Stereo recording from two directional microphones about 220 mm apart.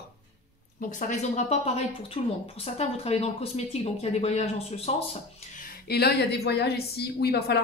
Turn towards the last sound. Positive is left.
turn(degrees=45)  # may be behind; listen again after turning